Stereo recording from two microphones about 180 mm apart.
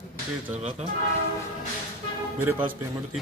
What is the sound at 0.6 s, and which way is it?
Speech, 40° right (ahead or behind).